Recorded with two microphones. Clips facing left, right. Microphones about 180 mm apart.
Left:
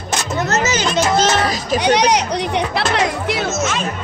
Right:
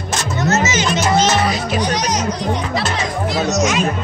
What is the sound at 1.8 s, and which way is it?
Music, 65° left (ahead or behind).